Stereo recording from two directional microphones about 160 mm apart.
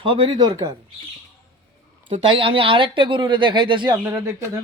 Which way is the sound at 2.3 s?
35° right (ahead or behind).